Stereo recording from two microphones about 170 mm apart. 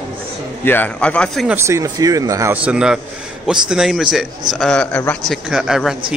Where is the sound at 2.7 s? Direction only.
5° right (ahead or behind).